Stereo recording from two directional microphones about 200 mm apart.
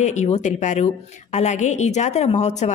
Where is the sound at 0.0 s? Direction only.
35° left (ahead or behind).